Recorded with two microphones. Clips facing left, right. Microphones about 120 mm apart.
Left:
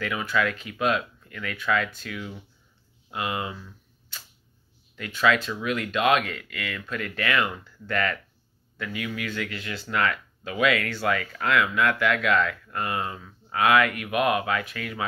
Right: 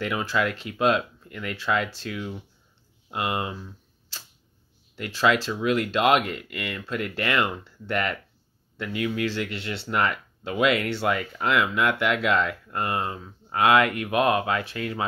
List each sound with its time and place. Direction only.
0.0 s speech: 25° right (ahead or behind)